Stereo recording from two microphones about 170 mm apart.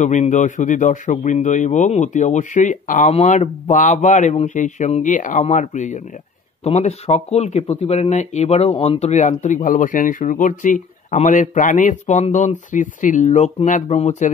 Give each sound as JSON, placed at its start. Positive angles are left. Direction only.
{"t": 0.0, "sound": "speech", "side_deg": 45}